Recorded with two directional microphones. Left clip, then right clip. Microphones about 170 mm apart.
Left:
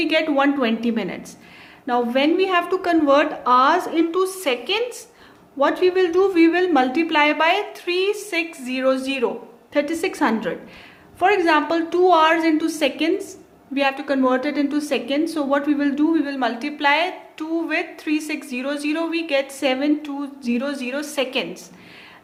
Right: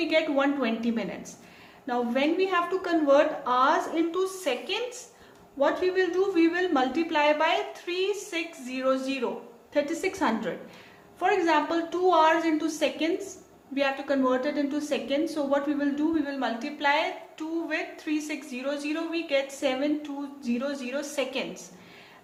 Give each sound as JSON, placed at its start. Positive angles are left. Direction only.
{"t": 0.0, "sound": "speech", "side_deg": 45}